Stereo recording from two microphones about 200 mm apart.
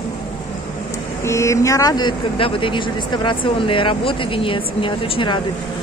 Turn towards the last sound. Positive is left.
turn(degrees=25)  # may be behind; listen again after turning